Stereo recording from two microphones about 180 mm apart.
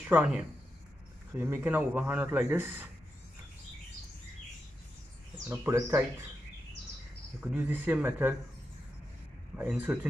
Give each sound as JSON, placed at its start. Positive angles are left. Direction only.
{"t": 0.0, "sound": "a man's voice", "side_deg": -5}
{"t": 5.5, "sound": "a man's voice", "side_deg": -15}
{"t": 7.3, "sound": "a man's voice", "side_deg": -10}
{"t": 9.6, "sound": "a man's voice", "side_deg": -5}